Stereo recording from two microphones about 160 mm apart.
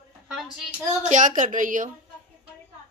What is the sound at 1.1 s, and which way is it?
Speech, 50° right (ahead or behind).